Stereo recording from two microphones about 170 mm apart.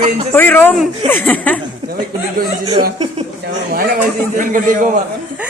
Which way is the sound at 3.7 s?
60° right (ahead or behind).